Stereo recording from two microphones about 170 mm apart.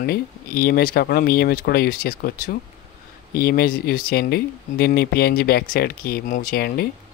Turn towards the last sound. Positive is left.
turn(degrees=65)  # may be behind; listen again after turning